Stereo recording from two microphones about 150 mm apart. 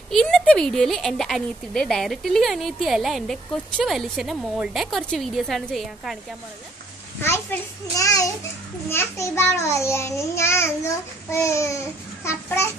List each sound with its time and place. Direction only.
0.1 s a woman's voice: 5° left (ahead or behind)
7.2 s a child's voice: 15° left (ahead or behind)